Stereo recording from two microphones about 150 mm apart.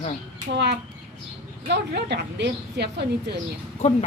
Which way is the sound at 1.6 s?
90° right.